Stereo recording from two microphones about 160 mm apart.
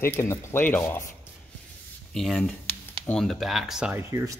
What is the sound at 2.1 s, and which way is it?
Speech, centre (ahead or behind).